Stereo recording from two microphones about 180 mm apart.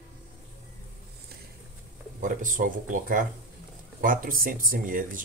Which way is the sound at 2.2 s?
45° right (ahead or behind).